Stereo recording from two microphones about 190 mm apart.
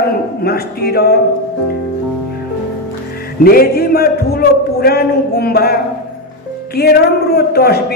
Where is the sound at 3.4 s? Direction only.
55° left (ahead or behind).